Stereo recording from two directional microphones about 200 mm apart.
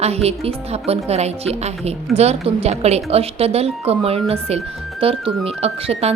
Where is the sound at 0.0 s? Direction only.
30° right (ahead or behind).